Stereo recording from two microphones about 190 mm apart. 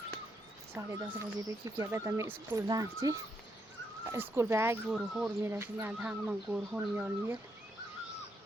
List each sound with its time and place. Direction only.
0.7 s speech: 15° right (ahead or behind)
5.4 s speech: 15° right (ahead or behind)